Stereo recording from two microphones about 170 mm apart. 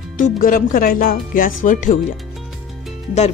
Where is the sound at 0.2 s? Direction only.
55° left (ahead or behind).